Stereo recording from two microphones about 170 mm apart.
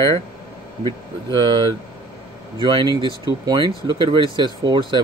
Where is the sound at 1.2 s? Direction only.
25° right (ahead or behind).